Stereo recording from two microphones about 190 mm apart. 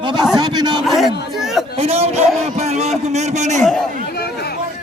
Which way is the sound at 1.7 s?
30° right (ahead or behind).